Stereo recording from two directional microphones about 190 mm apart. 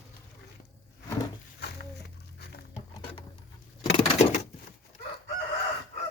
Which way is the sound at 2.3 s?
60° left (ahead or behind).